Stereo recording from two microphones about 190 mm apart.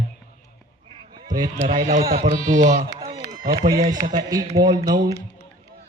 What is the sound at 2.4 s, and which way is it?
Speech, 45° right (ahead or behind).